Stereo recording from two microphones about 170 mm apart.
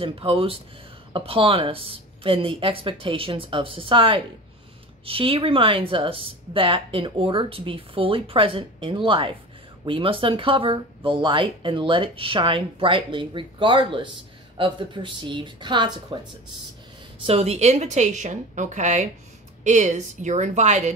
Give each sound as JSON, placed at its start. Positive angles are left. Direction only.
{"t": 0.0, "sound": "speech", "side_deg": -30}
{"t": 17.2, "sound": "a woman's voice", "side_deg": -35}